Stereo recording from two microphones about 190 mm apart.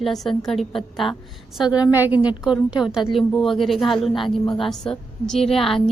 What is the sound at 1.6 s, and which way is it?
Speech, 20° left (ahead or behind).